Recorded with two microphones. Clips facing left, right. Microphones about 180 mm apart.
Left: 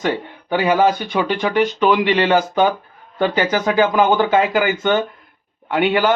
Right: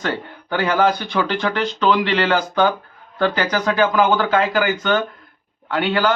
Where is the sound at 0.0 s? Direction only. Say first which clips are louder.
Left 3 dB; 15° left (ahead or behind).